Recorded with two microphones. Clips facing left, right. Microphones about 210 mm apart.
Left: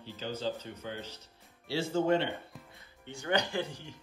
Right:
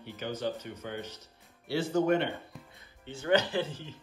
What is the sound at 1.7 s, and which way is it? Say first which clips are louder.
Speech: right 2 dB; 25° left (ahead or behind).